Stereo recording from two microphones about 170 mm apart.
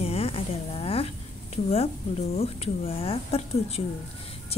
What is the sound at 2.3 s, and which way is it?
A woman's voice, 35° left (ahead or behind).